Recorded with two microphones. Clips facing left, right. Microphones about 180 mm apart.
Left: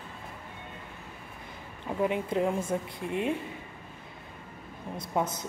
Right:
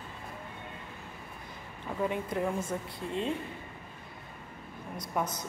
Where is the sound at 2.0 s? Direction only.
20° left (ahead or behind).